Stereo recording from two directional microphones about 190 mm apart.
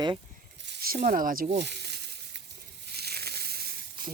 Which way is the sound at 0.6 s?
55° right (ahead or behind).